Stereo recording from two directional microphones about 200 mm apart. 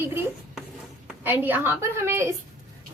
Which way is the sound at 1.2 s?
10° right (ahead or behind).